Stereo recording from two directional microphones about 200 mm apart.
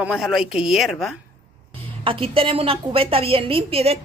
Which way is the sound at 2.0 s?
25° right (ahead or behind).